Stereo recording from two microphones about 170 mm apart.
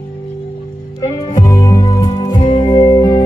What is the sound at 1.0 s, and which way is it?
Music, 20° left (ahead or behind).